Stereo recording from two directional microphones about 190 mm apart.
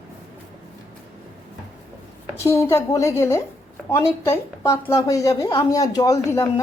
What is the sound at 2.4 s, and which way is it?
A woman's voice, 15° left (ahead or behind).